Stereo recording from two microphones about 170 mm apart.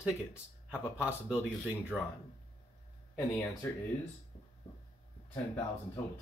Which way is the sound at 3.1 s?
20° left (ahead or behind).